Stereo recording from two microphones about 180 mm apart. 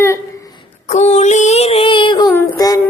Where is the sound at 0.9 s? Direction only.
40° left (ahead or behind).